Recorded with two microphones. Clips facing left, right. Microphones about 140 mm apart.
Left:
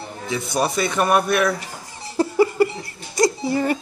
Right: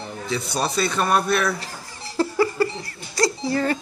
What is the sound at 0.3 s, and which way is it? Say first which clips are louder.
A woman's voice: left 3 dB; 20° left (ahead or behind).